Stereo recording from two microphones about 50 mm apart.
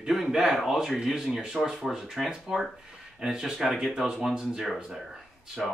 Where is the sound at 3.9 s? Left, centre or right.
Centre.